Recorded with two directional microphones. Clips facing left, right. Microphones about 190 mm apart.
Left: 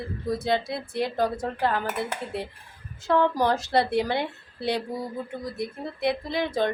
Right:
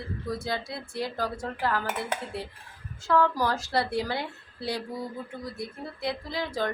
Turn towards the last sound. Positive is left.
turn(degrees=20)  # may be behind; listen again after turning